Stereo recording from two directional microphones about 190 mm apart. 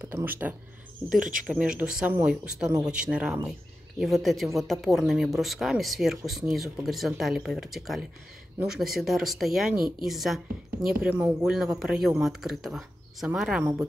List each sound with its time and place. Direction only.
0.0 s speech: 10° right (ahead or behind)
1.3 s speech: 45° right (ahead or behind)
1.8 s speech: 5° right (ahead or behind)